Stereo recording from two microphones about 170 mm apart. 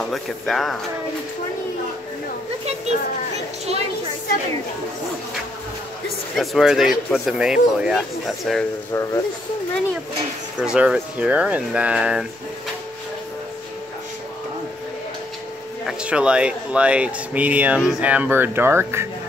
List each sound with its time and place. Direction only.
0.1 s speech: centre (ahead or behind)
6.3 s speech: centre (ahead or behind)
8.9 s speech: 15° left (ahead or behind)
10.6 s speech: 5° right (ahead or behind)
15.9 s speech: 5° right (ahead or behind)